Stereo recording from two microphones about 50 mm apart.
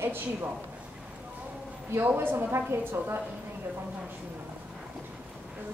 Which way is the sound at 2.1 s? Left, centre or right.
Right.